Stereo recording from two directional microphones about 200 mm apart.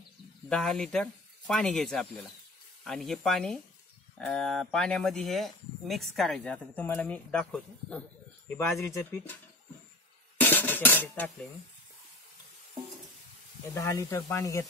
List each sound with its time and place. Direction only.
0.5 s speech: 5° left (ahead or behind)
10.3 s music: 10° left (ahead or behind)
13.7 s speech: 15° left (ahead or behind)